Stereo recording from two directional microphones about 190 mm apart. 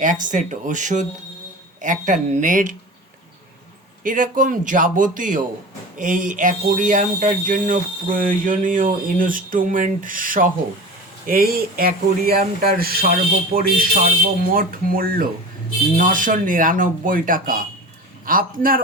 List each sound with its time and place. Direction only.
0.0 s speech: 45° right (ahead or behind)
4.0 s speech: 45° right (ahead or behind)